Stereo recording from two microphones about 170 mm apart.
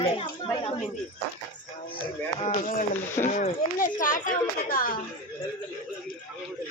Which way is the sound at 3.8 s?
55° left (ahead or behind).